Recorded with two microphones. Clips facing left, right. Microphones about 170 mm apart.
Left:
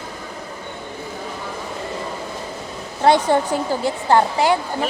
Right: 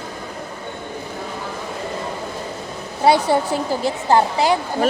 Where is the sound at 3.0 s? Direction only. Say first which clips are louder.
Even; 10° right (ahead or behind).